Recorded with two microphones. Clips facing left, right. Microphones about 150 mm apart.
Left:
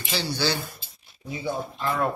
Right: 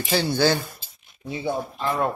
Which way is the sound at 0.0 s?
50° right (ahead or behind).